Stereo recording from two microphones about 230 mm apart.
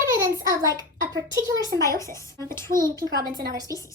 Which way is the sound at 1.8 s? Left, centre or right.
Centre.